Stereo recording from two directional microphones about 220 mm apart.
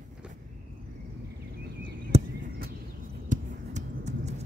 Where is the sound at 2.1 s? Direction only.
30° right (ahead or behind).